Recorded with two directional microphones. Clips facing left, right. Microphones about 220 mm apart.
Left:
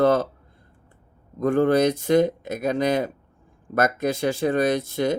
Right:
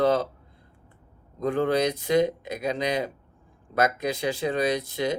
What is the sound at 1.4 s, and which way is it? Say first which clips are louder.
Speech: left 5 dB; 50° left (ahead or behind).